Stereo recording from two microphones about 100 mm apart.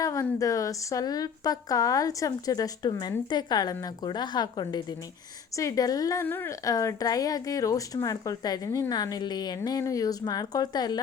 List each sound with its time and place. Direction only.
0.0 s a sound: 30° left (ahead or behind)
0.3 s a woman's voice: 35° left (ahead or behind)
5.5 s a woman's voice: 35° left (ahead or behind)
6.2 s speech: 25° left (ahead or behind)
6.7 s a woman's voice: 35° left (ahead or behind)